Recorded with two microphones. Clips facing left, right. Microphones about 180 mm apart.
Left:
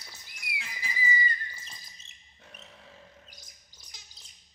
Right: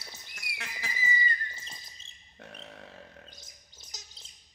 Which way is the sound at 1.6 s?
25° right (ahead or behind).